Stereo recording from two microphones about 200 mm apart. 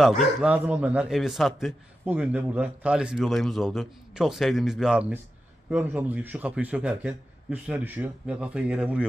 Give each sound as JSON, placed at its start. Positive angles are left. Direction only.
{"t": 0.0, "sound": "a man's voice", "side_deg": 0}